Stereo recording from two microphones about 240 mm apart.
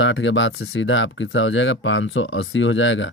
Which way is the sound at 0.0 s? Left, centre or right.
Left.